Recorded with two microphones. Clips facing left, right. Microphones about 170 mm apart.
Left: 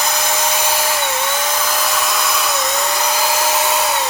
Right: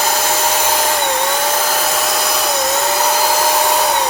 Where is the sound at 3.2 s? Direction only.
45° right (ahead or behind).